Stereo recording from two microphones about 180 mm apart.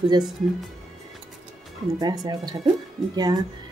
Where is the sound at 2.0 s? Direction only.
20° right (ahead or behind).